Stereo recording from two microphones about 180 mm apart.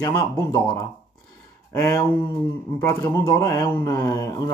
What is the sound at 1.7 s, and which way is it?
Mantra, 15° left (ahead or behind).